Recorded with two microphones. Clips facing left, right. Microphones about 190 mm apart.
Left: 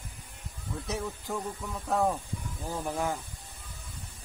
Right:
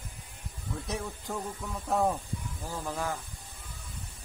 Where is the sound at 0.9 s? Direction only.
Centre (ahead or behind).